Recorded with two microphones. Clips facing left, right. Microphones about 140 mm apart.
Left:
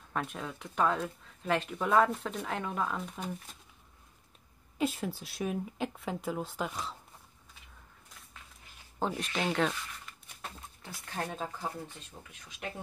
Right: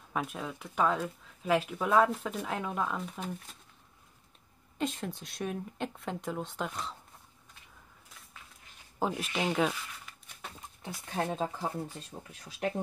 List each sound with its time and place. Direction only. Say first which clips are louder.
0.1 s speech: right 1 dB; 5° right (ahead or behind)
4.7 s speech: left 2 dB; 5° left (ahead or behind)
9.0 s speech: right 1 dB; 5° right (ahead or behind)
10.8 s speech: right 4 dB; 20° right (ahead or behind)